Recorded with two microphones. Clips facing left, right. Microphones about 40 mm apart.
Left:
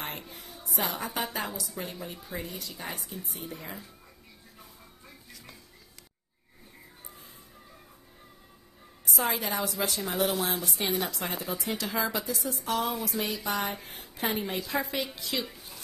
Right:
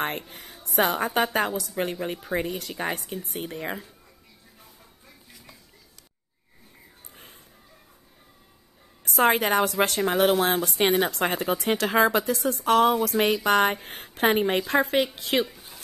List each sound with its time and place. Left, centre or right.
0.3 s music: right
0.7 s a woman's voice: right
9.0 s a woman's voice: right
15.5 s a sound: centre